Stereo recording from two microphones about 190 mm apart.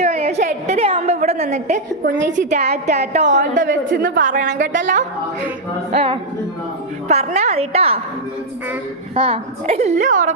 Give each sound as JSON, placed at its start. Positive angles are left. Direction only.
{"t": 0.0, "sound": "a sound", "side_deg": -35}
{"t": 0.9, "sound": "a woman's voice", "side_deg": -35}
{"t": 3.8, "sound": "a woman's voice", "side_deg": -70}
{"t": 4.1, "sound": "a woman's voice", "side_deg": -40}
{"t": 5.9, "sound": "a woman's voice", "side_deg": -30}
{"t": 9.1, "sound": "a woman's voice", "side_deg": -30}